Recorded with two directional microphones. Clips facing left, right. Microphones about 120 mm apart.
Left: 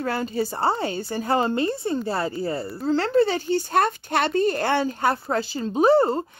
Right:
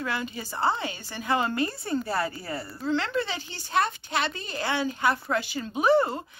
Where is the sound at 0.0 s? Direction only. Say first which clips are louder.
Left 7 dB; 40° left (ahead or behind).